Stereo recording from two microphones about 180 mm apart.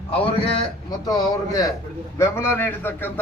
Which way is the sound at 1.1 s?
20° left (ahead or behind).